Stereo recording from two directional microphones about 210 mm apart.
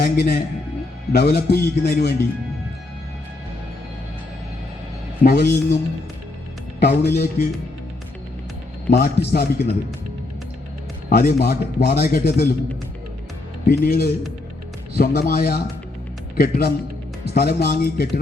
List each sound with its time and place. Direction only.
0.0 s speech: 50° left (ahead or behind)
5.2 s speech: 45° left (ahead or behind)
6.7 s speech: 50° left (ahead or behind)
8.9 s speech: 45° left (ahead or behind)
11.1 s speech: 45° left (ahead or behind)
13.7 s speech: 45° left (ahead or behind)